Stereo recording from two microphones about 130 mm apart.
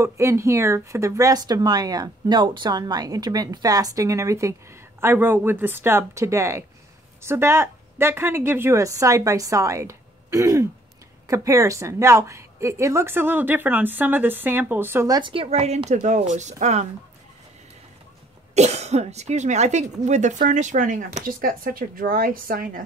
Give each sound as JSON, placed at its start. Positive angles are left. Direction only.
{"t": 0.0, "sound": "speech", "side_deg": -20}
{"t": 15.3, "sound": "a woman's voice", "side_deg": -50}
{"t": 18.5, "sound": "a woman's voice", "side_deg": -60}